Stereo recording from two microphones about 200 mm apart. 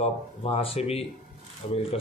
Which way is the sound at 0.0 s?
30° left (ahead or behind).